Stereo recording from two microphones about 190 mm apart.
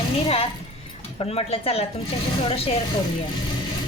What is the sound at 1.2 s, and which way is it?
Speech, 30° left (ahead or behind).